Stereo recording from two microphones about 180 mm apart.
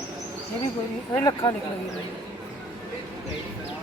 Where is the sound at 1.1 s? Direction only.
20° left (ahead or behind).